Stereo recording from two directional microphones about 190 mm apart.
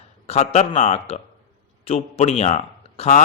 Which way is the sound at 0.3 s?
35° left (ahead or behind).